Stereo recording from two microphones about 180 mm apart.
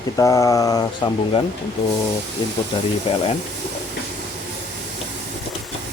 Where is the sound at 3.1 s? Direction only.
35° left (ahead or behind).